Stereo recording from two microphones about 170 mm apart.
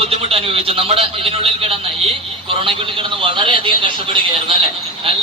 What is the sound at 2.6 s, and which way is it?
Speech, 30° right (ahead or behind).